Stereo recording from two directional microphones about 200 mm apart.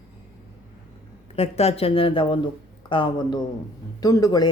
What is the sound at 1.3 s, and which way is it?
A woman's voice, 30° left (ahead or behind).